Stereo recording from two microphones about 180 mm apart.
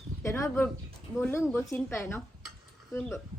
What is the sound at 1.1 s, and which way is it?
A woman's voice, 15° left (ahead or behind).